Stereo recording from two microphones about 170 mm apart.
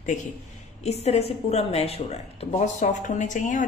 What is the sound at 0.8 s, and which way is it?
A woman's voice, 40° left (ahead or behind).